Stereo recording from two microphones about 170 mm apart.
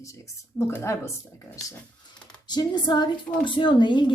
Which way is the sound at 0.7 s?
15° left (ahead or behind).